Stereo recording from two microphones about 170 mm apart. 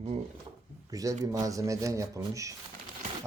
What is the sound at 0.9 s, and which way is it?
Speech, 20° right (ahead or behind).